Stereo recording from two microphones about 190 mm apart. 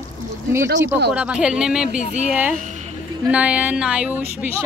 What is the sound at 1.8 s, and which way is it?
Speech, 40° left (ahead or behind).